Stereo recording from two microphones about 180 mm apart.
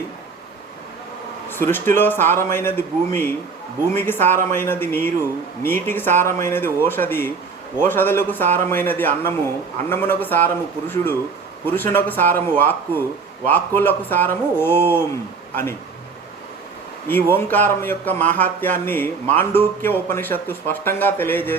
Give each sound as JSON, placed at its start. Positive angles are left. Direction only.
{"t": 1.5, "sound": "speech", "side_deg": 10}
{"t": 17.1, "sound": "speech", "side_deg": 10}